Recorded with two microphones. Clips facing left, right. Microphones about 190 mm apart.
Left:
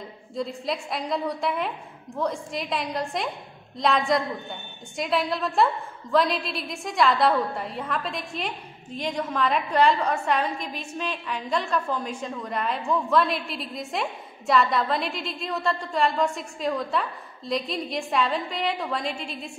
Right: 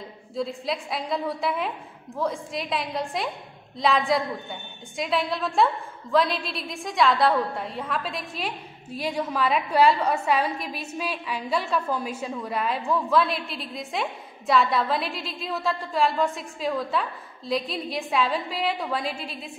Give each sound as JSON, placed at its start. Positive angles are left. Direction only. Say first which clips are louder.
{"t": 0.4, "sound": "a woman's voice", "louder": "even", "side_deg": 0}